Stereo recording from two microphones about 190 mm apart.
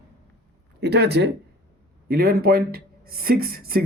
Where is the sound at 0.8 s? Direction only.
60° right (ahead or behind).